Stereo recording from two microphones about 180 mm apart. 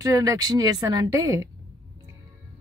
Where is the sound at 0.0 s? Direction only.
20° right (ahead or behind).